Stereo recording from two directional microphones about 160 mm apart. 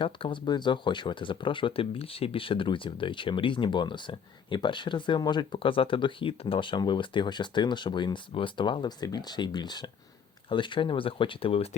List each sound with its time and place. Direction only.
0.0 s speech: 30° left (ahead or behind)